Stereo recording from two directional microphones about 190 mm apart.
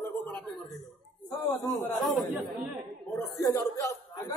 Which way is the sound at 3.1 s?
15° left (ahead or behind).